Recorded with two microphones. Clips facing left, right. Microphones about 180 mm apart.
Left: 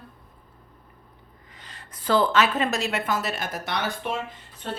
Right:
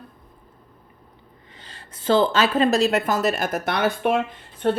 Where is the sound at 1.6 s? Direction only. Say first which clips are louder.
Right 5 dB; 30° right (ahead or behind).